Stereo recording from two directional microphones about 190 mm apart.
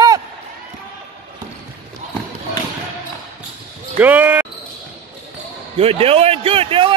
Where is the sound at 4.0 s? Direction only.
10° right (ahead or behind).